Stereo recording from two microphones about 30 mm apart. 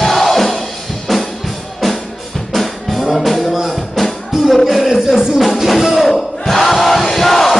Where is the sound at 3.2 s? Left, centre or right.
Centre.